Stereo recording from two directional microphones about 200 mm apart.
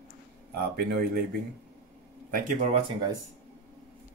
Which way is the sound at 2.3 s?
40° right (ahead or behind).